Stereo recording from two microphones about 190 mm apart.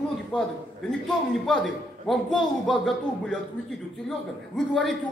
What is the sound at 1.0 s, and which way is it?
A man's voice, centre (ahead or behind).